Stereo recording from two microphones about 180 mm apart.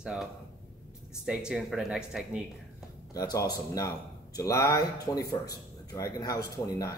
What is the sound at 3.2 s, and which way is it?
Speech, 20° left (ahead or behind).